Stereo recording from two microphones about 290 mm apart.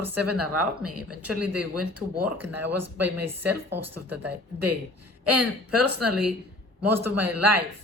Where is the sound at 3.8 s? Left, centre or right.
Right.